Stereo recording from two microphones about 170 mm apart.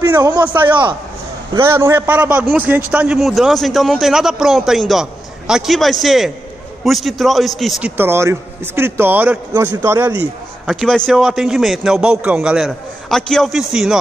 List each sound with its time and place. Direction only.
0.0 s a man's voice: 20° right (ahead or behind)
1.6 s a man's voice: 15° right (ahead or behind)
8.0 s a man's voice: 15° right (ahead or behind)
10.7 s a man's voice: centre (ahead or behind)